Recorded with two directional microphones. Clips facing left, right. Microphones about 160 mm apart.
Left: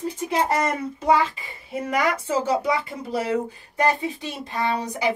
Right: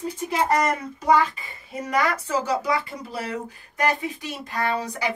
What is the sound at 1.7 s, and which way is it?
Speech, 25° left (ahead or behind).